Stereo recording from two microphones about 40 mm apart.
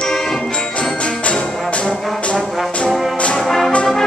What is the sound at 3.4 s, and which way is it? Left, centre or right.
Music, centre.